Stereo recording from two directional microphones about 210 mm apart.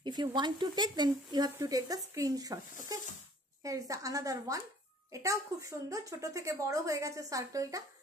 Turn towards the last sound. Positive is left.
turn(degrees=-15)  # may be behind; listen again after turning